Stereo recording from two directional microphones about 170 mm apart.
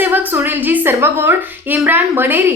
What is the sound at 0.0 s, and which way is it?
A woman's voice, 10° right (ahead or behind).